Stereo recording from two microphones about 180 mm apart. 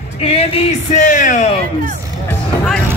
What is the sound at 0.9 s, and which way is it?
Speech, 45° left (ahead or behind).